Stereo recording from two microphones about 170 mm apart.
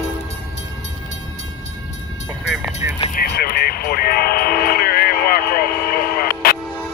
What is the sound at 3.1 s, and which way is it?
Train, 65° left (ahead or behind).